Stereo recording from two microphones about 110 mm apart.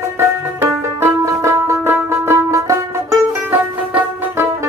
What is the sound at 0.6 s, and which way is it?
Music, 20° right (ahead or behind).